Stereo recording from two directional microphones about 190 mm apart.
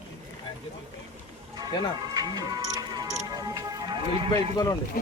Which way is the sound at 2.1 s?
20° right (ahead or behind).